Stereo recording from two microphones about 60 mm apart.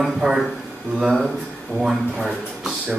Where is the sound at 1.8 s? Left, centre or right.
Centre.